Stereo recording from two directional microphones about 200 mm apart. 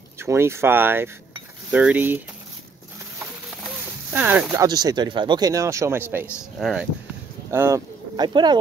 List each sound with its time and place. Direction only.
0.2 s speech: 10° right (ahead or behind)
4.1 s speech: 10° right (ahead or behind)